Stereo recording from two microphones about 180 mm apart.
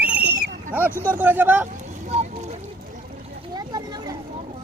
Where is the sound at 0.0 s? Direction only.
10° right (ahead or behind).